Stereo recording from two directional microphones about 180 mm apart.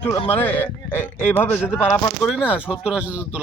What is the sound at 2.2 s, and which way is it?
Speech, centre (ahead or behind).